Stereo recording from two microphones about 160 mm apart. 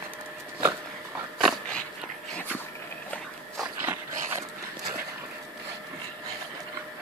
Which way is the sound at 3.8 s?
10° right (ahead or behind).